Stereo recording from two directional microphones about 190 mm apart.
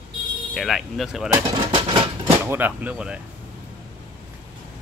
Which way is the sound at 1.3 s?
20° right (ahead or behind).